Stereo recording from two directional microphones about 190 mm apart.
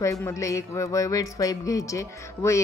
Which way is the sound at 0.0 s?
15° left (ahead or behind).